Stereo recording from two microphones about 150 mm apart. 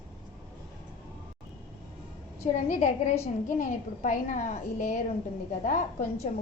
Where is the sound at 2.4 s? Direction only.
55° left (ahead or behind).